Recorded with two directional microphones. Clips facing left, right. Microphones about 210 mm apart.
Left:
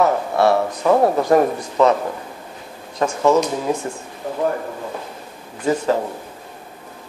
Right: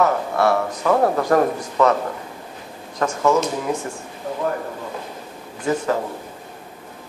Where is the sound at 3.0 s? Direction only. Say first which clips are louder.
Left 2 dB; 20° left (ahead or behind).